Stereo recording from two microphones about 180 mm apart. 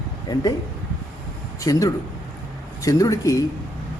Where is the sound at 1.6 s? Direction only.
20° left (ahead or behind).